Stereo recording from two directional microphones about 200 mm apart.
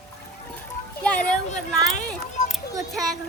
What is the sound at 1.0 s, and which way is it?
Speech, 5° left (ahead or behind).